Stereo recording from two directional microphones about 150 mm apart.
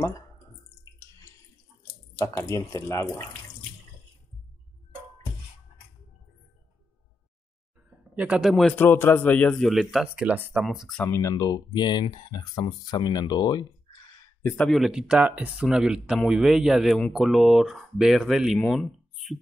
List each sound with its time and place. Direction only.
2.1 s speech: 20° left (ahead or behind)
8.2 s speech: 5° right (ahead or behind)
8.8 s speech: 15° left (ahead or behind); by 11.0 s centre (ahead or behind)
11.0 s speech: 15° left (ahead or behind)
14.4 s speech: 10° left (ahead or behind)
14.7 s speech: 5° right (ahead or behind)